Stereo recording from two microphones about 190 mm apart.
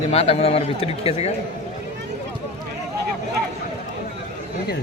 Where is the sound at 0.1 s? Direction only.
35° left (ahead or behind).